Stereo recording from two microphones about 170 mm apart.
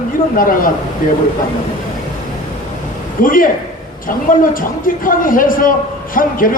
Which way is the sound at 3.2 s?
55° left (ahead or behind).